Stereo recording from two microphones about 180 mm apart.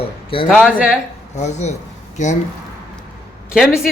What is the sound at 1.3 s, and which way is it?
Speech, 40° left (ahead or behind).